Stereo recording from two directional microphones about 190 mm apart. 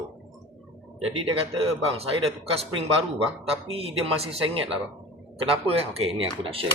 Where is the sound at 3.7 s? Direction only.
30° right (ahead or behind).